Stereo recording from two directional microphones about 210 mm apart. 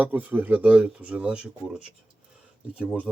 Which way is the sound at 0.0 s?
5° right (ahead or behind).